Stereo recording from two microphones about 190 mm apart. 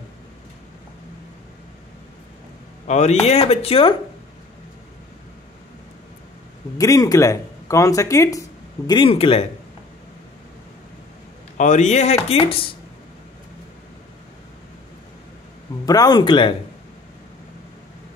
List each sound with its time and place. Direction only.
2.9 s speech: 35° left (ahead or behind)
6.8 s speech: 20° left (ahead or behind)
11.5 s speech: 40° left (ahead or behind)
15.8 s speech: 20° left (ahead or behind)